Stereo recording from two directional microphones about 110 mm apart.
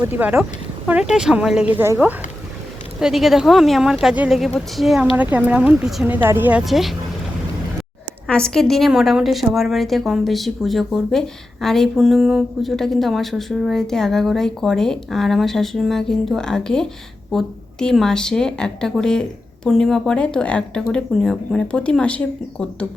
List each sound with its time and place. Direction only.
0.1 s speech: 15° right (ahead or behind)
3.0 s a woman's voice: 5° right (ahead or behind)
5.1 s speech: 15° right (ahead or behind)
6.1 s speech: 20° right (ahead or behind)
6.7 s a woman's voice: centre (ahead or behind)
8.3 s a woman's voice: 5° left (ahead or behind)